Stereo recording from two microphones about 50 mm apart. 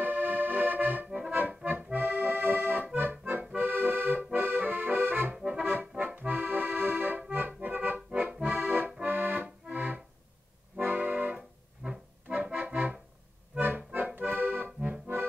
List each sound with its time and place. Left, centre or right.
0.0 s accordion: right
1.5 s accordion: right
5.3 s accordion: centre
8.1 s accordion: centre
8.5 s accordion: right
11.3 s music: centre
12.4 s accordion: right
13.6 s accordion: right